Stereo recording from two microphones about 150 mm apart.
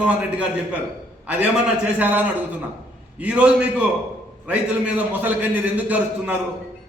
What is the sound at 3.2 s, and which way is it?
A man's voice, 10° right (ahead or behind).